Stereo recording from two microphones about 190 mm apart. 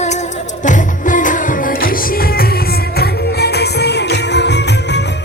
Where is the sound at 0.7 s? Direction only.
45° left (ahead or behind).